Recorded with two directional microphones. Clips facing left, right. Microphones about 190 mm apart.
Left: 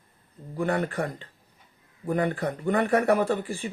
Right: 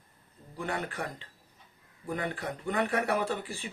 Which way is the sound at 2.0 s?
50° left (ahead or behind).